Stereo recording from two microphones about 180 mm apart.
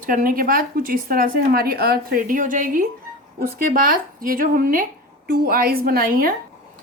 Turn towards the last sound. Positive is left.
turn(degrees=-55)  # may be behind; listen again after turning